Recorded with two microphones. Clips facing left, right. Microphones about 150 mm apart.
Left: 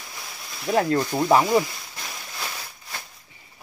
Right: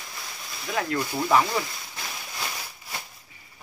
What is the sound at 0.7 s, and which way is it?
Speech, 35° left (ahead or behind).